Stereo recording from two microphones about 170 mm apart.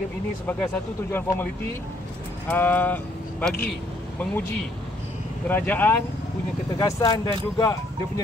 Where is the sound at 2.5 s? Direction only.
10° left (ahead or behind).